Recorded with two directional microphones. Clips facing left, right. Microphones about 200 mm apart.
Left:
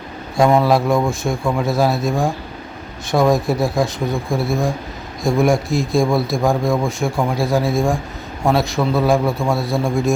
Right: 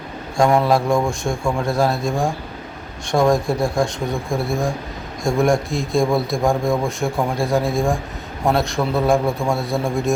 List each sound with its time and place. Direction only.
0.3 s a man's voice: 5° left (ahead or behind)